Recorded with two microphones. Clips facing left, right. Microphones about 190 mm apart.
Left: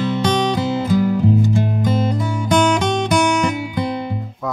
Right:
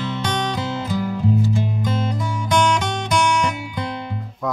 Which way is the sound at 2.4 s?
40° left (ahead or behind).